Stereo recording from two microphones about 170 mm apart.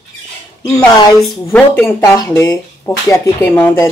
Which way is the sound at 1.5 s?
15° left (ahead or behind).